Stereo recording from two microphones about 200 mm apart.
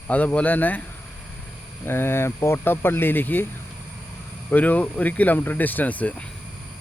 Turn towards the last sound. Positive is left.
turn(degrees=5)  # may be behind; listen again after turning